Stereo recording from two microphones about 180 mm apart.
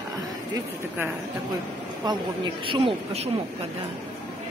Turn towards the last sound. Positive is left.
turn(degrees=-30)  # may be behind; listen again after turning